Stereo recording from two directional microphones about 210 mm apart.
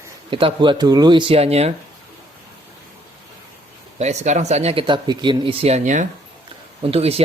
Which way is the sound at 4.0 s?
35° right (ahead or behind).